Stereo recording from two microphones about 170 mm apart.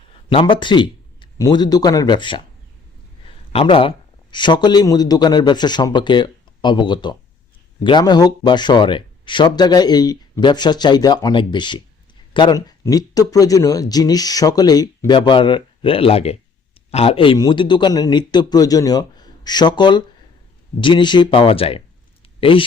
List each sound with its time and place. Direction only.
0.3 s a man's voice: 30° left (ahead or behind)